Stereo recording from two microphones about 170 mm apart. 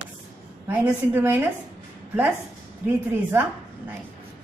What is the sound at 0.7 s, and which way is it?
Speech, 15° right (ahead or behind).